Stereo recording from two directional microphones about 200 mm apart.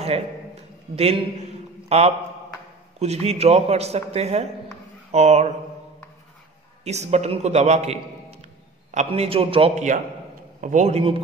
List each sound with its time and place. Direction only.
0.9 s a man's voice: 30° right (ahead or behind)
6.8 s a man's voice: 35° right (ahead or behind)